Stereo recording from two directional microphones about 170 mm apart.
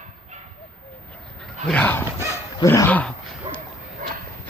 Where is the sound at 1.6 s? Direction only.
5° left (ahead or behind).